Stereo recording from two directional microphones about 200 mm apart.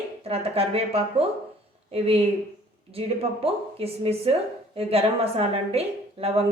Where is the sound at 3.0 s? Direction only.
30° right (ahead or behind).